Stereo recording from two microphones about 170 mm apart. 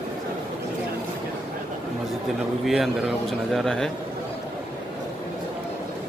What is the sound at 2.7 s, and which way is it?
Speech, centre (ahead or behind).